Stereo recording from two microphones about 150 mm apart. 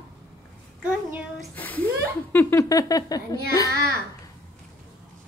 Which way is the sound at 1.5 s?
10° left (ahead or behind).